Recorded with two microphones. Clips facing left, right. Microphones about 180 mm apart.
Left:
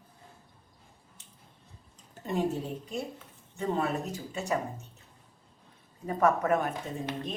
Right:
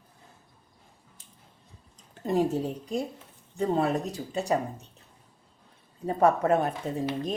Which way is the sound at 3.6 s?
35° right (ahead or behind).